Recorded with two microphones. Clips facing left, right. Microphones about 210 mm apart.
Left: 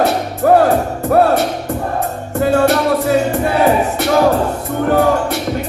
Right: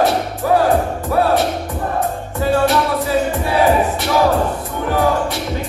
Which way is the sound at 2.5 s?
55° left (ahead or behind).